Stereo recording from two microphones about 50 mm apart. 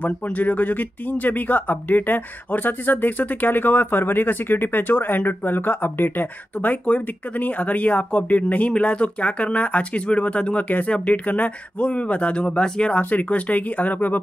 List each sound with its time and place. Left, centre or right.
0.0 s speech: left
13.1 s speech: left